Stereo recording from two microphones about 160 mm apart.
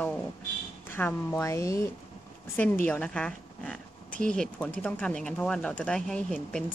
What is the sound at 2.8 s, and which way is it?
Speech, 10° left (ahead or behind).